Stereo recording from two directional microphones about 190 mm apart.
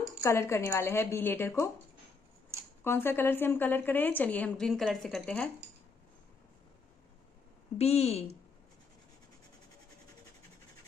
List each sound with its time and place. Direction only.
0.2 s speech: 15° left (ahead or behind)
2.8 s speech: 10° left (ahead or behind)
7.7 s a woman's voice: 35° left (ahead or behind)